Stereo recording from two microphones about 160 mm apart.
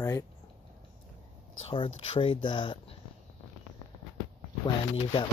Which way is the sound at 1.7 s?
35° left (ahead or behind).